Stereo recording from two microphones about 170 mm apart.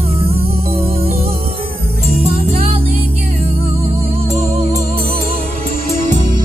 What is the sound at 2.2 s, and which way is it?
Music, 35° right (ahead or behind).